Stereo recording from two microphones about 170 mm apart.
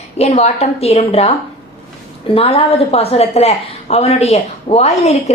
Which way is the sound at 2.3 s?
35° left (ahead or behind).